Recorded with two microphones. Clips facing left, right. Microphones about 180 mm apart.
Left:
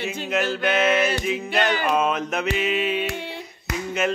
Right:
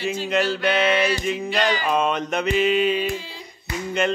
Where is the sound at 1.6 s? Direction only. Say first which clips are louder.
Even; 55° left (ahead or behind).